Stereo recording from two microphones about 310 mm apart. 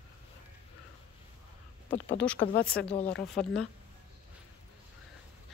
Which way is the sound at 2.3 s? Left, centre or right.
Left.